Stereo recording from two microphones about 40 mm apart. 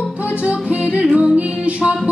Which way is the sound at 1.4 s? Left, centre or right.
Right.